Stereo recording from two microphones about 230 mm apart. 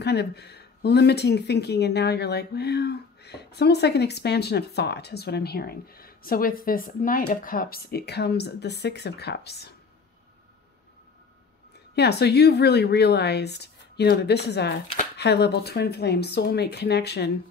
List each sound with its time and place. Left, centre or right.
0.0 s speech: left
11.9 s speech: left